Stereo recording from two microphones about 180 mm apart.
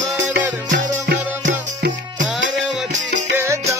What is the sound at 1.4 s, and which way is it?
Music, 45° right (ahead or behind).